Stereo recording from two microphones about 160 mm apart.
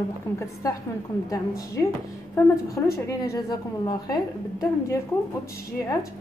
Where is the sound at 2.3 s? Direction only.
20° left (ahead or behind).